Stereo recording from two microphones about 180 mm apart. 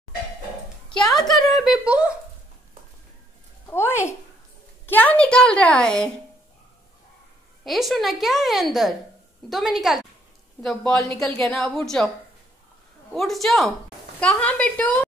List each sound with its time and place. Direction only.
0.9 s a woman's voice: centre (ahead or behind)
3.7 s a woman's voice: 15° left (ahead or behind)
7.6 s a woman's voice: centre (ahead or behind)
13.1 s a woman's voice: centre (ahead or behind)